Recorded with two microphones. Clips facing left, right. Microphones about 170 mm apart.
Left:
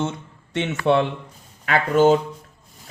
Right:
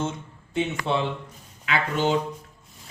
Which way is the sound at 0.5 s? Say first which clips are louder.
Left 1 dB; 80° left.